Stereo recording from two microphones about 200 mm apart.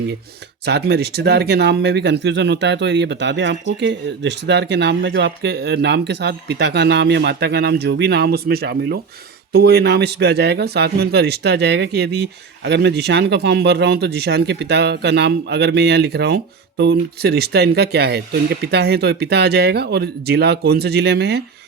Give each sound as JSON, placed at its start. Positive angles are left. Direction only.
{"t": 0.6, "sound": "a man's voice", "side_deg": -55}